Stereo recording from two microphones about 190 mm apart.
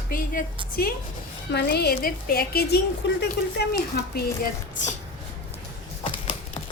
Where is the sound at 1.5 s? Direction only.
60° left (ahead or behind).